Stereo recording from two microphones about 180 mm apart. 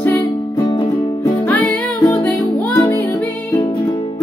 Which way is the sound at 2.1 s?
10° left (ahead or behind).